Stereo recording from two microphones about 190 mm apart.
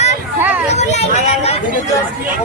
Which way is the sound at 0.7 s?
35° left (ahead or behind).